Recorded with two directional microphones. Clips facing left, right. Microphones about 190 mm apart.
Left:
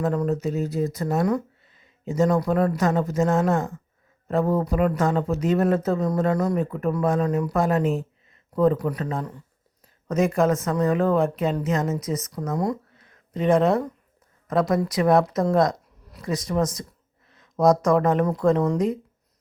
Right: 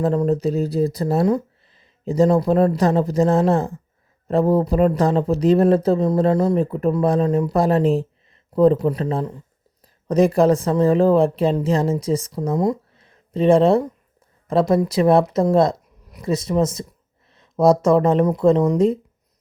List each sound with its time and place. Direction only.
0.0 s speech: 30° right (ahead or behind)